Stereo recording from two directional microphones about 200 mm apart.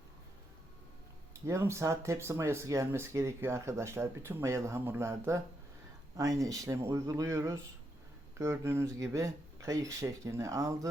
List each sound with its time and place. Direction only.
1.5 s speech: 15° right (ahead or behind)